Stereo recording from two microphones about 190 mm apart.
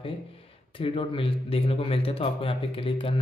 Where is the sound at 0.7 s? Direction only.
30° left (ahead or behind).